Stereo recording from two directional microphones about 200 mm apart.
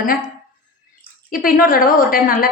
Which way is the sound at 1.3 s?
45° left (ahead or behind).